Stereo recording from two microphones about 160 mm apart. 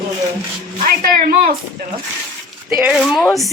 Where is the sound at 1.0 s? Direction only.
65° right (ahead or behind).